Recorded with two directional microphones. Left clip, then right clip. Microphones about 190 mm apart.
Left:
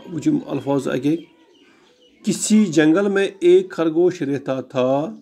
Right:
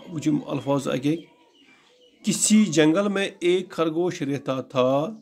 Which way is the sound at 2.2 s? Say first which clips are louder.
Left 3 dB; 10° right (ahead or behind).